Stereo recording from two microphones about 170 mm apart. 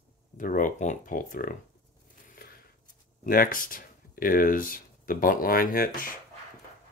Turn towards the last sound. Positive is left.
turn(degrees=55)  # may be behind; listen again after turning